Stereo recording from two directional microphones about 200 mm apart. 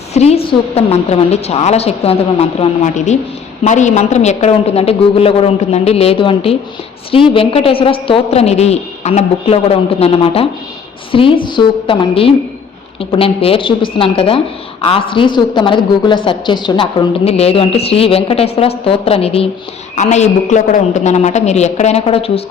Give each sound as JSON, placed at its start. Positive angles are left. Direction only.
{"t": 0.1, "sound": "a woman's voice", "side_deg": 30}